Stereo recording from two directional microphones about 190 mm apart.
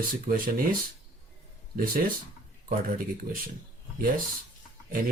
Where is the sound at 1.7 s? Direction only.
50° right (ahead or behind).